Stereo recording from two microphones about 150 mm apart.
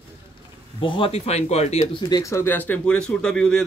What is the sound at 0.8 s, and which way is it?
Speech, 35° left (ahead or behind).